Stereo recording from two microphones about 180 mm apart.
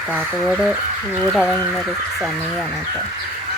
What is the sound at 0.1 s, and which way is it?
Speech, centre (ahead or behind).